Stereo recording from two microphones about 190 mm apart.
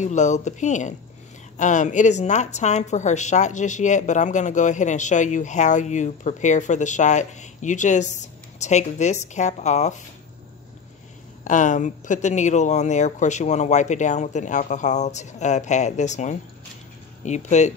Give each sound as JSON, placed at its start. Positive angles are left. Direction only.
{"t": 0.0, "sound": "a woman's voice", "side_deg": 40}
{"t": 11.4, "sound": "a woman's voice", "side_deg": 40}